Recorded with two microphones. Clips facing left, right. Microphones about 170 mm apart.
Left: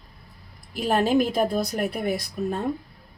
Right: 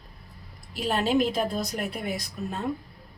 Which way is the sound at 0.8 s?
50° left (ahead or behind).